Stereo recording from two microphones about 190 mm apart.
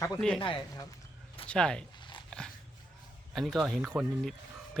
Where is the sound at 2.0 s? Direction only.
25° left (ahead or behind).